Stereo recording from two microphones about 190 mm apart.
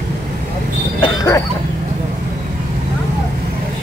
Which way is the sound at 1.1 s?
20° left (ahead or behind).